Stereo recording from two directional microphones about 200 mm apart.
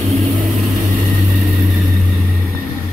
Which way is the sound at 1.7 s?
Centre (ahead or behind).